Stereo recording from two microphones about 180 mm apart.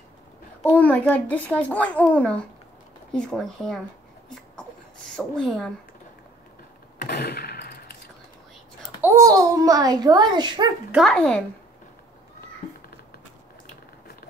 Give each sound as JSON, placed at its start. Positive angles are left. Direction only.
{"t": 0.7, "sound": "a child's voice", "side_deg": 10}
{"t": 4.6, "sound": "a sound", "side_deg": 5}
{"t": 7.0, "sound": "gunshot", "side_deg": 65}
{"t": 9.0, "sound": "a child's voice", "side_deg": -15}
{"t": 10.9, "sound": "speech", "side_deg": 0}